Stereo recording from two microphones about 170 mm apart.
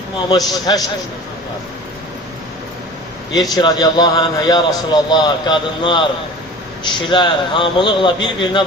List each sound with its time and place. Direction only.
0.3 s a man's voice: 20° left (ahead or behind)
3.5 s a man's voice: 25° left (ahead or behind)